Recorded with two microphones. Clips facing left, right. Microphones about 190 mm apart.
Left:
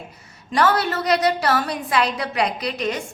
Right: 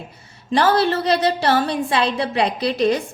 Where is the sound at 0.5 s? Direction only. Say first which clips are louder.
Right 3 dB; 30° right (ahead or behind).